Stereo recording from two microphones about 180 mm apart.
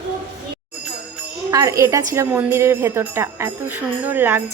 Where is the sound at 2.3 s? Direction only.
15° right (ahead or behind).